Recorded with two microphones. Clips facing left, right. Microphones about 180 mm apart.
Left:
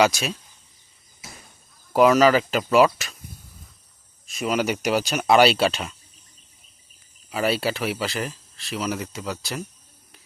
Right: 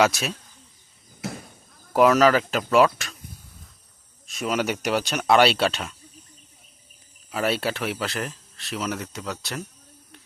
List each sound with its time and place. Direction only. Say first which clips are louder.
0.0 s speech: left 1 dB; centre (ahead or behind)
1.2 s a sound: right 13 dB; 65° right (ahead or behind)
1.9 s speech: left 1 dB; centre (ahead or behind)
4.3 s speech: left 2 dB; centre (ahead or behind)
7.3 s speech: left 1 dB; centre (ahead or behind)